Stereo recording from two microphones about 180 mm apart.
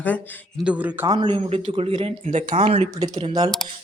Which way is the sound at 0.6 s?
10° right (ahead or behind).